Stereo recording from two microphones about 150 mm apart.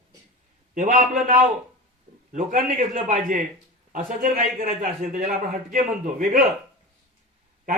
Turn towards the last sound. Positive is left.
turn(degrees=-65)  # may be behind; listen again after turning